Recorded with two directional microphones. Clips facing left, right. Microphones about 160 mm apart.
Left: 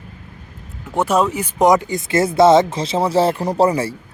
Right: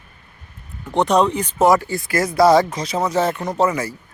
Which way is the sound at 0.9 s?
5° left (ahead or behind).